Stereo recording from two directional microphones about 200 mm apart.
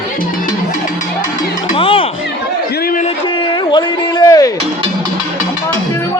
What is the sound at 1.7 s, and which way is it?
Music, 25° left (ahead or behind).